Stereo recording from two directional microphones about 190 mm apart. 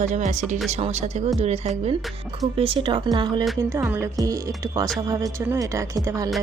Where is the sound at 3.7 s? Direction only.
10° right (ahead or behind).